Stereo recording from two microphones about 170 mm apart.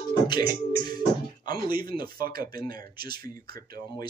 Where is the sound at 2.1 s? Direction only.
60° right (ahead or behind).